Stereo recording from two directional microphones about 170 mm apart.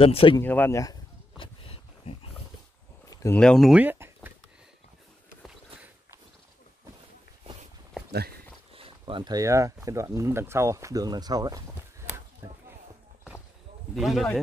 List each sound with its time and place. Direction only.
0.0 s speech: 30° left (ahead or behind)
0.4 s speech: 10° left (ahead or behind)
1.4 s a sound: 35° left (ahead or behind)
3.1 s a sound: 20° left (ahead or behind)
3.3 s speech: 5° left (ahead or behind); by 4.3 s 10° right (ahead or behind)
8.1 s speech: 70° right (ahead or behind)
8.7 s speech: 30° right (ahead or behind)
13.9 s speech: centre (ahead or behind)